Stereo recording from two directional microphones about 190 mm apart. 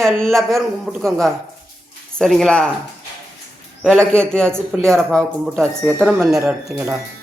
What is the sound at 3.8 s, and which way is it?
Speech, 5° left (ahead or behind).